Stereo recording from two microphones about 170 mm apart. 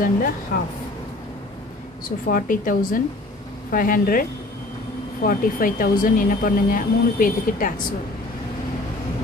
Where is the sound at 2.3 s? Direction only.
55° left (ahead or behind).